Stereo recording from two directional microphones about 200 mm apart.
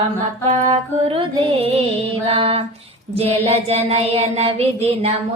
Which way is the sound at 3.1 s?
30° right (ahead or behind).